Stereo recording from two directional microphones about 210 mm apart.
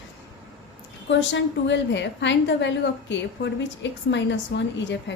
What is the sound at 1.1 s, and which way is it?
A woman's voice, 60° left (ahead or behind).